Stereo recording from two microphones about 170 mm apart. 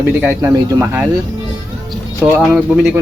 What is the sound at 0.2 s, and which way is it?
Speech, 15° right (ahead or behind).